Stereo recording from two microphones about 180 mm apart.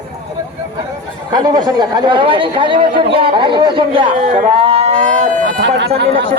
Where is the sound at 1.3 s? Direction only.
20° right (ahead or behind).